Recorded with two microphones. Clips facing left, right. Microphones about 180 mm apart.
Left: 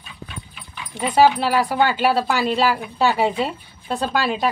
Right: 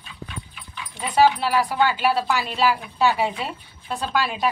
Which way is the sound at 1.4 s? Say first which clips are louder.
Left 2 dB; 30° left (ahead or behind).